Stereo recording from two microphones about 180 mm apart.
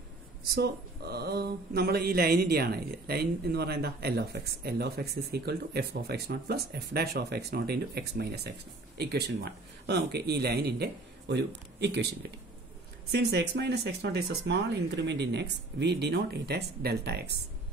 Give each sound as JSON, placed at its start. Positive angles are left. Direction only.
{"t": 0.6, "sound": "speech", "side_deg": -60}
{"t": 13.1, "sound": "speech", "side_deg": -65}